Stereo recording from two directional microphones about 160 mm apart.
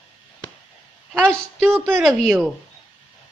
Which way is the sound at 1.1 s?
Centre (ahead or behind).